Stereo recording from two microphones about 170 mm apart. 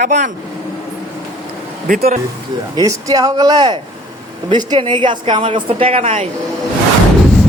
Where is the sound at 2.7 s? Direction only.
20° right (ahead or behind); by 6.2 s 40° right (ahead or behind).